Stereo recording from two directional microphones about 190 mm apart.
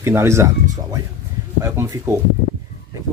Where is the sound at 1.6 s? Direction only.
15° right (ahead or behind).